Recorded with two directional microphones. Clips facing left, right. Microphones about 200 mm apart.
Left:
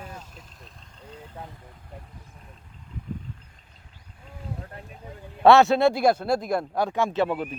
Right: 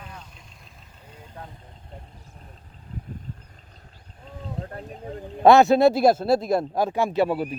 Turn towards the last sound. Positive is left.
turn(degrees=-10)  # may be behind; listen again after turning